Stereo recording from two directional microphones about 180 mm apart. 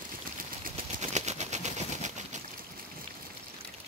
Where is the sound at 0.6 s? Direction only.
40° right (ahead or behind).